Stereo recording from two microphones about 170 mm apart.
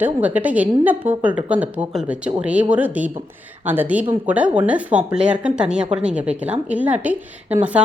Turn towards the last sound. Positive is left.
turn(degrees=-10)  # may be behind; listen again after turning